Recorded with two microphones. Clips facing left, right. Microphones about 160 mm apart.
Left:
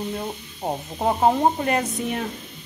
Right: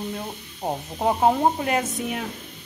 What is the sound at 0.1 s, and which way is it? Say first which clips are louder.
Speech: left 3 dB; 5° left (ahead or behind).